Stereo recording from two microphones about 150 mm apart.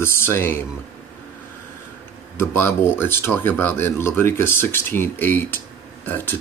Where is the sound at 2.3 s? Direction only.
15° left (ahead or behind).